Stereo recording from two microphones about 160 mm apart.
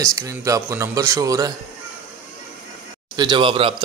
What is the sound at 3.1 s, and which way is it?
Speech, 30° right (ahead or behind).